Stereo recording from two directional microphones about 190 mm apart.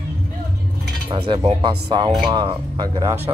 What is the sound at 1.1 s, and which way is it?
Speech, 25° right (ahead or behind).